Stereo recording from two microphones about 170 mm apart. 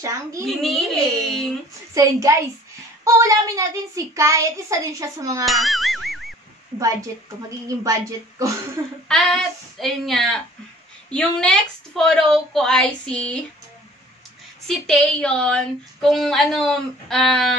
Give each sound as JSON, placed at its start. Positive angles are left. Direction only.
{"t": 0.0, "sound": "a child's voice", "side_deg": -20}
{"t": 0.5, "sound": "a woman's voice", "side_deg": 0}
{"t": 2.0, "sound": "a child's voice", "side_deg": -20}
{"t": 5.4, "sound": "music", "side_deg": 0}
{"t": 7.6, "sound": "a child's voice", "side_deg": -20}
{"t": 9.1, "sound": "a woman's voice", "side_deg": 5}
{"t": 14.7, "sound": "a woman's voice", "side_deg": 5}